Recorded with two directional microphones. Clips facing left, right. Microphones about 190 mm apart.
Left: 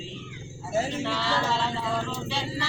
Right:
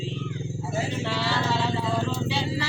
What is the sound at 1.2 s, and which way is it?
Speech, 5° right (ahead or behind).